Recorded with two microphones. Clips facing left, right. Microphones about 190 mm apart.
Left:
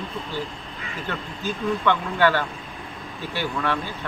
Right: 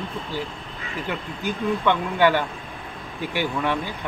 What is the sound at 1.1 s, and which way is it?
Speech, 15° right (ahead or behind).